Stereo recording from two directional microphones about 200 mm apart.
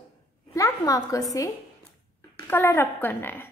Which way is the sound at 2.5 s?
10° left (ahead or behind).